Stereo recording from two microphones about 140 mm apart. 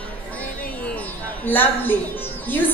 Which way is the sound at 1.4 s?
15° left (ahead or behind).